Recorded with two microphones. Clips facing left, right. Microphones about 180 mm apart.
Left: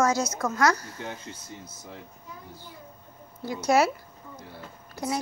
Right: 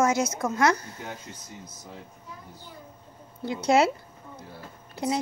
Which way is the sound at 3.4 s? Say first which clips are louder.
Right 1 dB; 25° right (ahead or behind).